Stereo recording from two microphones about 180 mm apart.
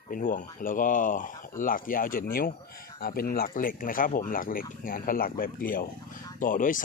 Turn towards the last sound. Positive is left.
turn(degrees=45)  # may be behind; listen again after turning